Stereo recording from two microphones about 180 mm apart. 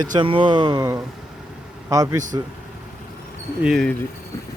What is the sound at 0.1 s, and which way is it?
Speech, 30° right (ahead or behind).